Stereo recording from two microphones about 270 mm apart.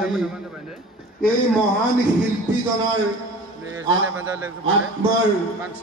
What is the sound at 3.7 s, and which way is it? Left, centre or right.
Speech, centre.